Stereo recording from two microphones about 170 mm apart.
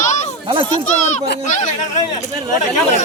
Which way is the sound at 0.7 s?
45° left (ahead or behind).